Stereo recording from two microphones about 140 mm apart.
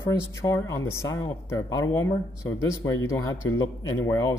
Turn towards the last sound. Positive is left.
turn(degrees=20)  # may be behind; listen again after turning